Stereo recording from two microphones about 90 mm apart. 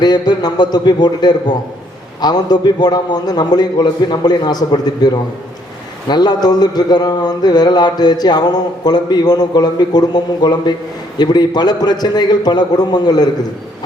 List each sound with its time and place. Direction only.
0.0 s a man's voice: 50° left (ahead or behind)
6.1 s a man's voice: 50° left (ahead or behind)